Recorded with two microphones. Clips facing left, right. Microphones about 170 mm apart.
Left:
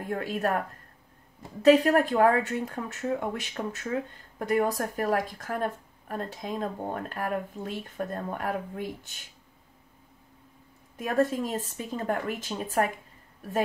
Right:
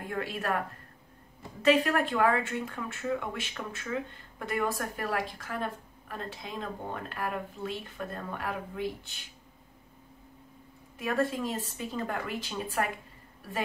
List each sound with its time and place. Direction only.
0.1 s speech: 40° left (ahead or behind)
1.6 s speech: 40° left (ahead or behind)
11.0 s a woman's voice: 40° left (ahead or behind)